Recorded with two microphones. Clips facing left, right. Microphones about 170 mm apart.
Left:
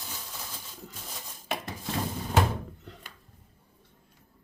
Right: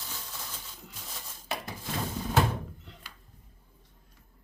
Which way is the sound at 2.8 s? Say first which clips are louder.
Left 4 dB; 45° left (ahead or behind).